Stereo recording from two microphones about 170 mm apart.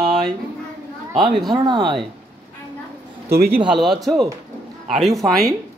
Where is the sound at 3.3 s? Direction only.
65° right (ahead or behind).